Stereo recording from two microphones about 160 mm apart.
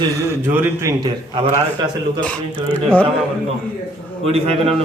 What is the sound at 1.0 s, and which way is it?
Speech, 35° right (ahead or behind).